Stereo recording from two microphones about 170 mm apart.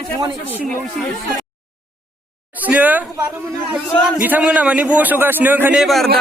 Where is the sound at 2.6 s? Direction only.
10° right (ahead or behind).